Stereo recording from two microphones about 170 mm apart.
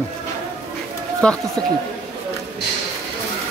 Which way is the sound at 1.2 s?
5° left (ahead or behind).